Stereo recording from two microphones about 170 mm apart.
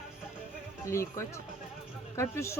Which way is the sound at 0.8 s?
15° left (ahead or behind).